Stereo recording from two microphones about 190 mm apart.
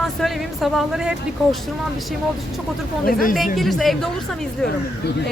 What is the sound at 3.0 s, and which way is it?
Speech, 45° left (ahead or behind).